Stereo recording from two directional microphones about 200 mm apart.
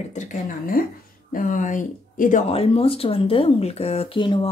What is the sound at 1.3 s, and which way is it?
Speech, 40° left (ahead or behind).